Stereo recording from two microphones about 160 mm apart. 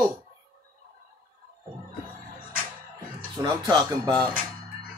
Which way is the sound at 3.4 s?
25° right (ahead or behind).